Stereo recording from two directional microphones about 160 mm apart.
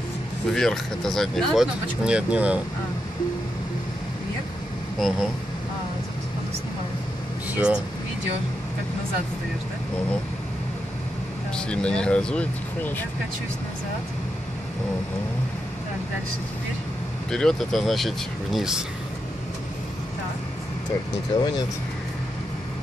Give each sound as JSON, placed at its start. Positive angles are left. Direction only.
{"t": 0.5, "sound": "speech", "side_deg": 5}
{"t": 4.9, "sound": "speech", "side_deg": 0}
{"t": 7.5, "sound": "speech", "side_deg": -5}
{"t": 11.5, "sound": "speech", "side_deg": 5}
{"t": 17.3, "sound": "speech", "side_deg": 5}
{"t": 21.3, "sound": "speech", "side_deg": 25}